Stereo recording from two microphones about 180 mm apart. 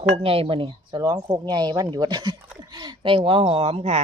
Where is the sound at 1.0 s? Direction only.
20° right (ahead or behind).